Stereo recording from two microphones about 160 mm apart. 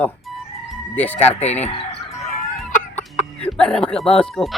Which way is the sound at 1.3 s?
45° left (ahead or behind).